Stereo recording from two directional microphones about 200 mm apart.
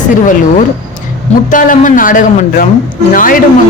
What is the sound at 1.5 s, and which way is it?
A man's voice, 40° left (ahead or behind).